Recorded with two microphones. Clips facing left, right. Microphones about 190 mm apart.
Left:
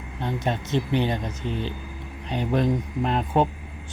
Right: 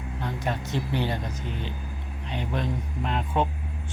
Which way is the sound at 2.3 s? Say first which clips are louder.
Left 7 dB; 40° left (ahead or behind).